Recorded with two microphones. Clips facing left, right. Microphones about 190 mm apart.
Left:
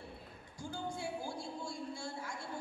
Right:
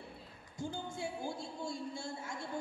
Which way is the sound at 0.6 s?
20° right (ahead or behind).